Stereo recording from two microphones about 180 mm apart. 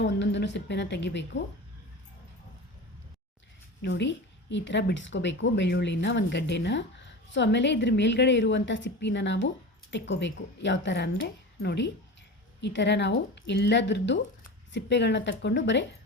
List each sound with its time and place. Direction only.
0.0 s speech: 75° left (ahead or behind)
3.8 s a woman's voice: 70° left (ahead or behind)